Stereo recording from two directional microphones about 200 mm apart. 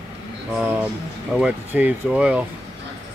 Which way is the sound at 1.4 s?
5° right (ahead or behind).